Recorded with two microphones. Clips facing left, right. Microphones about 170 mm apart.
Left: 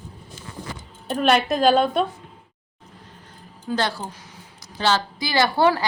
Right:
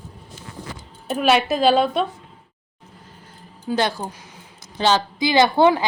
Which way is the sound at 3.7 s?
15° right (ahead or behind).